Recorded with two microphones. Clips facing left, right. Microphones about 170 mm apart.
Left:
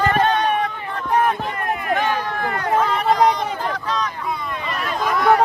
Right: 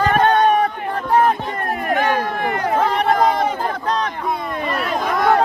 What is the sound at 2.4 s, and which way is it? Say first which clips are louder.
Speech: right 3 dB; 20° right (ahead or behind).